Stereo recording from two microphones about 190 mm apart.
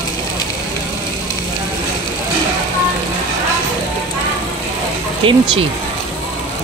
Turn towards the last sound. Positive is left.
turn(degrees=-30)  # may be behind; listen again after turning